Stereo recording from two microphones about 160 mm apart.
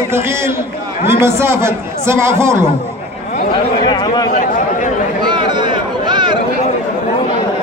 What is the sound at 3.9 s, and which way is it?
Speech, 25° left (ahead or behind).